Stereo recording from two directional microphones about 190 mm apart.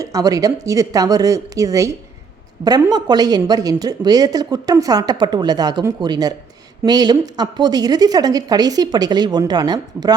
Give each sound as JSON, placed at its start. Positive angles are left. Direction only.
{"t": 0.0, "sound": "speech", "side_deg": -20}